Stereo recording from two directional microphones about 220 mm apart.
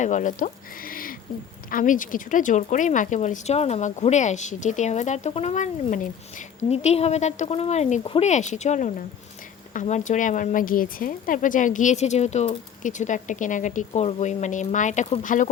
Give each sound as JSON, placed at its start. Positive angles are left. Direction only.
{"t": 0.0, "sound": "speech", "side_deg": 35}